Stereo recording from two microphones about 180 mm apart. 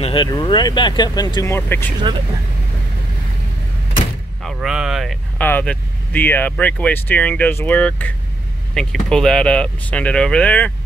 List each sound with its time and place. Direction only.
0.0 s speech: 25° left (ahead or behind)
4.4 s speech: centre (ahead or behind)
5.4 s speech: 10° left (ahead or behind)